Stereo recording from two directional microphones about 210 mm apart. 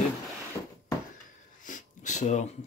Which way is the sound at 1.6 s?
35° left (ahead or behind).